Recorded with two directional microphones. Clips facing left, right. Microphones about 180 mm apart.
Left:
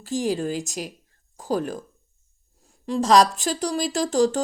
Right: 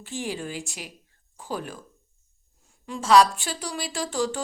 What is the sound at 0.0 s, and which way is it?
A woman's voice, 40° left (ahead or behind).